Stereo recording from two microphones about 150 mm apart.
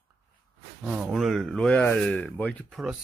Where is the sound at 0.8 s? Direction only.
10° right (ahead or behind).